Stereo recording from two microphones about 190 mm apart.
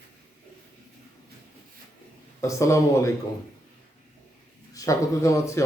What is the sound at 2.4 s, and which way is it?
Speech, 15° left (ahead or behind).